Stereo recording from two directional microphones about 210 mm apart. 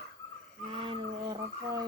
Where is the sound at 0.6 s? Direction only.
25° right (ahead or behind).